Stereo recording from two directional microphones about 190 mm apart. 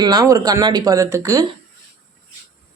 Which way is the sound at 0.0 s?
20° right (ahead or behind).